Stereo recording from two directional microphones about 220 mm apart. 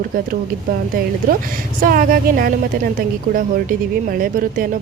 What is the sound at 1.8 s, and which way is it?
A woman's voice, 40° right (ahead or behind).